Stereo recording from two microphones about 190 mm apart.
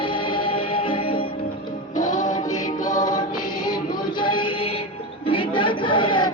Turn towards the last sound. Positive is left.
turn(degrees=25)  # may be behind; listen again after turning